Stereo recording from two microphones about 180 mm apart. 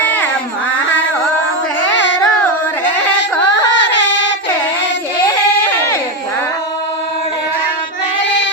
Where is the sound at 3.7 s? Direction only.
85° left.